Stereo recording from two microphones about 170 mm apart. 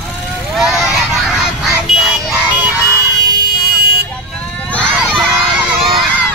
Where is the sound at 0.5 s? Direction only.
5° right (ahead or behind).